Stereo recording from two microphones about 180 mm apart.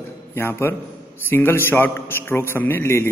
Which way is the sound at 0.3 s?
15° left (ahead or behind).